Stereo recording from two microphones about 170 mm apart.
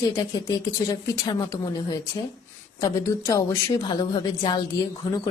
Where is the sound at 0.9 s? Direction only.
25° left (ahead or behind).